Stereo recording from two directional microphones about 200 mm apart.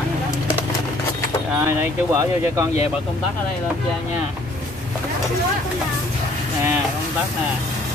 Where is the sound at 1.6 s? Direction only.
15° right (ahead or behind).